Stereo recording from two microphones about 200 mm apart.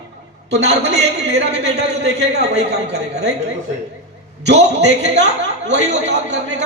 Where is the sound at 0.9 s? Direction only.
55° right (ahead or behind).